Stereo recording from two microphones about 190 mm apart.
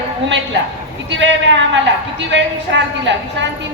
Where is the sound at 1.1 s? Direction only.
75° right (ahead or behind).